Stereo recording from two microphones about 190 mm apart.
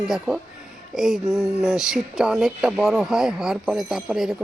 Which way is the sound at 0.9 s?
5° right (ahead or behind).